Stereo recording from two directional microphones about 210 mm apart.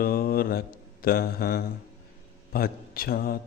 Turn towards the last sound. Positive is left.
turn(degrees=45)  # may be behind; listen again after turning